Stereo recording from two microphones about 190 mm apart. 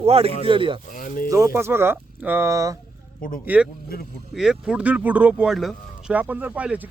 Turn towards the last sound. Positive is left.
turn(degrees=-10)  # may be behind; listen again after turning